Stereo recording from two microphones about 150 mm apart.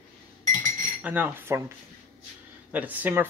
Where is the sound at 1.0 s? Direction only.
10° right (ahead or behind).